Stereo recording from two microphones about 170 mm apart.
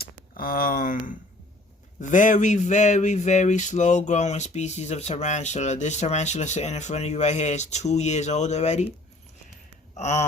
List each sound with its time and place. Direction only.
0.0 s speech: 60° left (ahead or behind); by 8.9 s 40° left (ahead or behind)
9.9 s speech: 45° left (ahead or behind)